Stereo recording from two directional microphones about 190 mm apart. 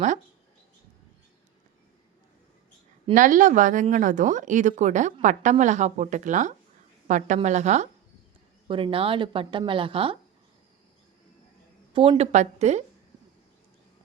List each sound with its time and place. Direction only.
3.2 s speech: 45° right (ahead or behind)
11.9 s speech: 30° right (ahead or behind)